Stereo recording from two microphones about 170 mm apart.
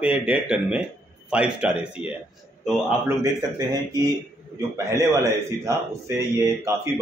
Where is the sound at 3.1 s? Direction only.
20° right (ahead or behind).